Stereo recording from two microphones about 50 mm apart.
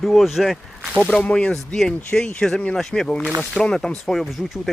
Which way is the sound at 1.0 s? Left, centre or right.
Centre.